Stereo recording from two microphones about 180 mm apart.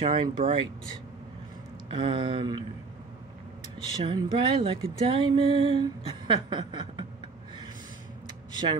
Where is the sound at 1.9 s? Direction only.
30° right (ahead or behind).